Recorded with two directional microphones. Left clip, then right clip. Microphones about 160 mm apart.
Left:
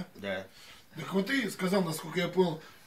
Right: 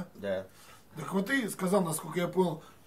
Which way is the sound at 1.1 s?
5° right (ahead or behind).